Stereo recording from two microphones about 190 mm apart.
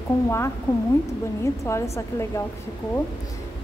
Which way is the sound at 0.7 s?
15° left (ahead or behind).